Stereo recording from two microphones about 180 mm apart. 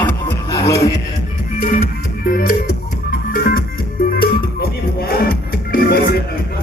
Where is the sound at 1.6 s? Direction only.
50° left (ahead or behind).